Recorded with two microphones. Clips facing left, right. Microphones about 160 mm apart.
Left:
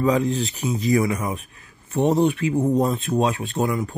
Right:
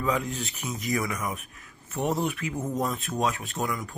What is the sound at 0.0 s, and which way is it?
Speech, 35° left (ahead or behind).